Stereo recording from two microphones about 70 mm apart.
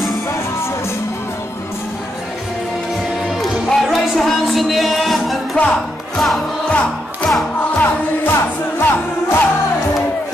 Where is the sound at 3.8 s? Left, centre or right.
Centre.